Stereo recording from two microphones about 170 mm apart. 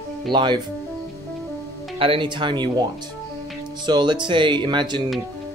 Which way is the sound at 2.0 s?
30° right (ahead or behind).